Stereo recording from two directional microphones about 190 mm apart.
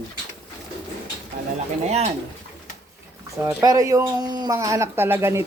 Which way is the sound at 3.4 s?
20° right (ahead or behind).